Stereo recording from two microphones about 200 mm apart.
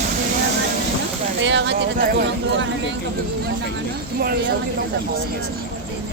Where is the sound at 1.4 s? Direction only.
65° right (ahead or behind).